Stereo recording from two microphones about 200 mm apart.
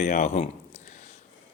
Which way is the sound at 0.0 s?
35° left (ahead or behind).